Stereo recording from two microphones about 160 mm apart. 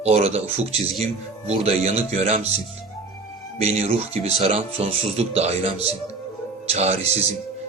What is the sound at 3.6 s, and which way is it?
Speech, 40° right (ahead or behind).